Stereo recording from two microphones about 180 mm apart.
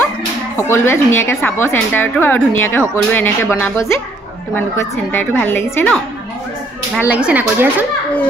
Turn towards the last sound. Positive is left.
turn(degrees=-10)  # may be behind; listen again after turning